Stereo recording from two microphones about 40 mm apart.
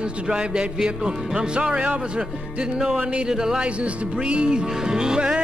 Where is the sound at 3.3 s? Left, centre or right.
Centre.